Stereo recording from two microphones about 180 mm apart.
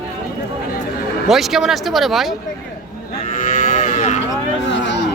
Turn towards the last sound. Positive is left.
turn(degrees=80)